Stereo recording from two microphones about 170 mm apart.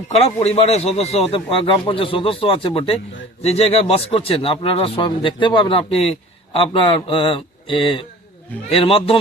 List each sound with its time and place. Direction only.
0.1 s speech: 35° left (ahead or behind)